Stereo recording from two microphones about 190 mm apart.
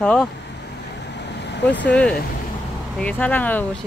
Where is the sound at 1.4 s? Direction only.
65° left (ahead or behind).